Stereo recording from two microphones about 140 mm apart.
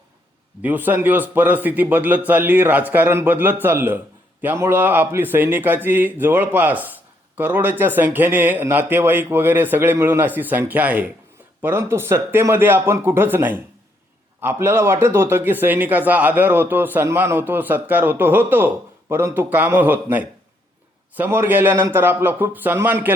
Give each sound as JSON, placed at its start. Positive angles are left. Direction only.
{"t": 0.6, "sound": "a man's voice", "side_deg": -10}